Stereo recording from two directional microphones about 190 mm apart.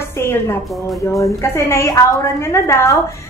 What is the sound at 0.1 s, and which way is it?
A woman's voice, 15° left (ahead or behind).